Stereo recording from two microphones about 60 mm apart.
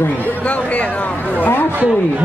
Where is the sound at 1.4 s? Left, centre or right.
Left.